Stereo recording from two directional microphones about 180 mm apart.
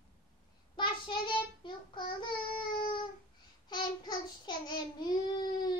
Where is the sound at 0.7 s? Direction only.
25° left (ahead or behind).